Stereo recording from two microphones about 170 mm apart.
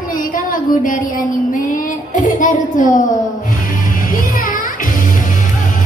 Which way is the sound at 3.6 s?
55° left (ahead or behind).